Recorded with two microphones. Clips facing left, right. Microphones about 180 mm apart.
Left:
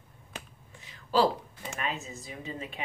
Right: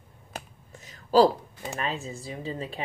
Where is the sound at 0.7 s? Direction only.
45° right (ahead or behind).